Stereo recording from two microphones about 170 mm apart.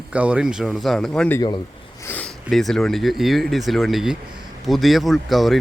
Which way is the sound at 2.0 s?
10° left (ahead or behind).